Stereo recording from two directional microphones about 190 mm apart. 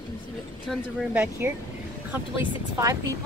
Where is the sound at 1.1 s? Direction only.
10° right (ahead or behind).